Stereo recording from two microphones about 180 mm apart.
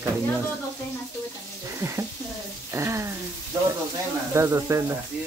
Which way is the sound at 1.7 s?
15° right (ahead or behind).